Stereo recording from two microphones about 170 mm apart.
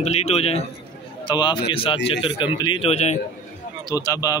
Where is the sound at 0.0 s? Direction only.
40° left (ahead or behind).